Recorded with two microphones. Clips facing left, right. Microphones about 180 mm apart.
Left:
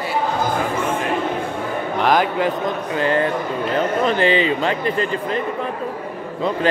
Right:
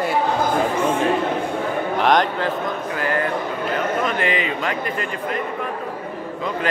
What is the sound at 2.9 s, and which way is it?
Speech, 25° left (ahead or behind).